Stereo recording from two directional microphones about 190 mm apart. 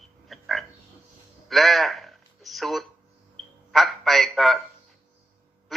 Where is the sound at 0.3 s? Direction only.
Centre (ahead or behind).